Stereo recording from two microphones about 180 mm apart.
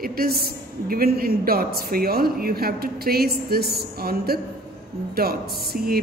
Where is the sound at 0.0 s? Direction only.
55° right (ahead or behind).